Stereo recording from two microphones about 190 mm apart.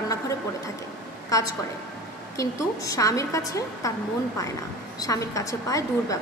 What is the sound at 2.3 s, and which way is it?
A woman's voice, 15° left (ahead or behind).